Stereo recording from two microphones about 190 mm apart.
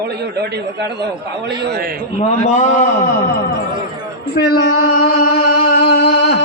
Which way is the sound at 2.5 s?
40° left (ahead or behind).